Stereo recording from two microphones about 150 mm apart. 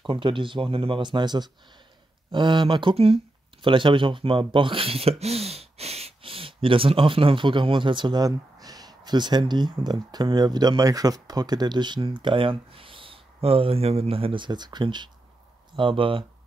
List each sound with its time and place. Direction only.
0.0 s speech: 35° right (ahead or behind)